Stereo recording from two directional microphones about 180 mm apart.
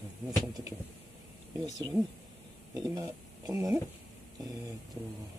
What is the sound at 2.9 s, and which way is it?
Speech, 20° right (ahead or behind).